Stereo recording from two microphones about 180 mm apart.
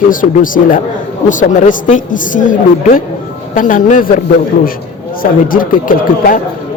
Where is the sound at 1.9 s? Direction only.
45° left (ahead or behind).